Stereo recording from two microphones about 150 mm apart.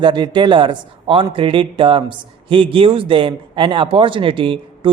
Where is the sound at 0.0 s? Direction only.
30° right (ahead or behind).